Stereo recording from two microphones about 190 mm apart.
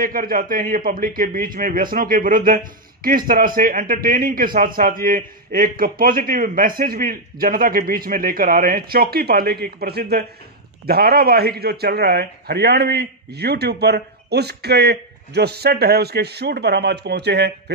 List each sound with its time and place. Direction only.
0.0 s a man's voice: 50° right (ahead or behind)